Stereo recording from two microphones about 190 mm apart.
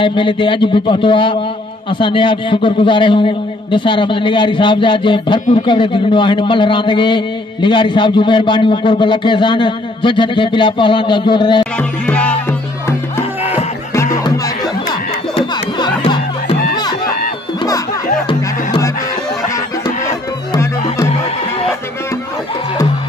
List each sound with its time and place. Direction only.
0.0 s a man's voice: 25° left (ahead or behind)
12.1 s music: 5° left (ahead or behind)
13.4 s music: 35° left (ahead or behind)
14.2 s music: 20° left (ahead or behind)